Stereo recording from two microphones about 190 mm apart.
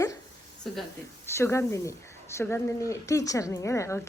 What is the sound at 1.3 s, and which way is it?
A woman's voice, 15° left (ahead or behind).